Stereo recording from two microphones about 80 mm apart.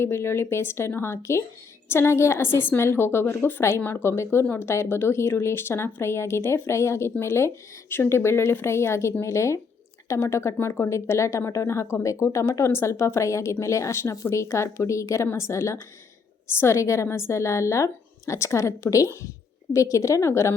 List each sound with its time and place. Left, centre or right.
0.0 s speech: left